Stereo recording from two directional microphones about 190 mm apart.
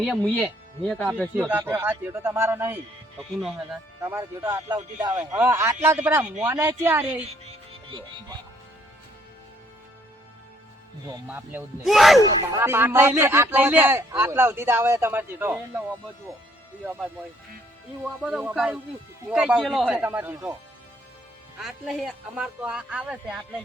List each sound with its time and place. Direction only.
0.0 s speech: 5° left (ahead or behind)
1.5 s speech: 10° right (ahead or behind)
3.2 s speech: centre (ahead or behind)
4.0 s speech: 15° right (ahead or behind)
5.1 s speech: 5° right (ahead or behind)
7.4 s music: 25° right (ahead or behind)
11.3 s speech: 10° right (ahead or behind)
11.9 s speech: centre (ahead or behind)
12.2 s speech: 15° right (ahead or behind)
18.2 s speech: 5° right (ahead or behind)
21.6 s speech: centre (ahead or behind)